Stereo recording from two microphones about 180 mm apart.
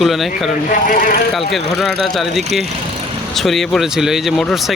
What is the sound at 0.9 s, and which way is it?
Speech, 50° left (ahead or behind).